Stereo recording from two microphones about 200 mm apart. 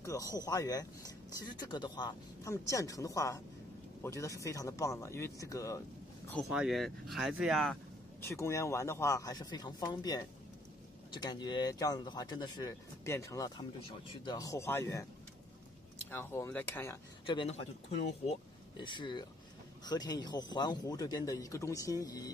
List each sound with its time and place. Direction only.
0.0 s speech: 15° left (ahead or behind)
6.3 s speech: centre (ahead or behind); by 15.0 s 15° left (ahead or behind)
16.1 s speech: 10° left (ahead or behind)
17.3 s speech: 25° left (ahead or behind)
18.8 s speech: 25° left (ahead or behind)